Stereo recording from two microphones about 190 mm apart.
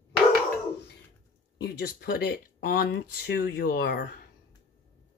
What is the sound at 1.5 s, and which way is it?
Speech, 55° left (ahead or behind).